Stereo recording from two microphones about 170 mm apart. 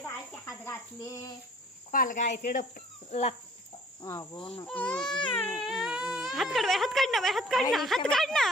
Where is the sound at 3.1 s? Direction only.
40° left (ahead or behind).